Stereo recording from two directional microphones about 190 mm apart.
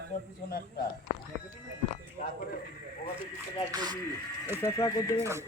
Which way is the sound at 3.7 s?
20° right (ahead or behind).